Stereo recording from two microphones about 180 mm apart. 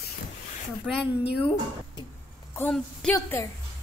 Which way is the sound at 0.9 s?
Centre (ahead or behind).